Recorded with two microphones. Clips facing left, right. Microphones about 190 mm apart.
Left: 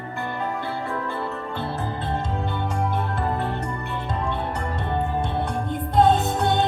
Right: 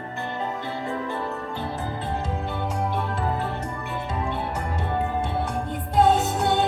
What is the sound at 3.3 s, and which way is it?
Music, 5° right (ahead or behind).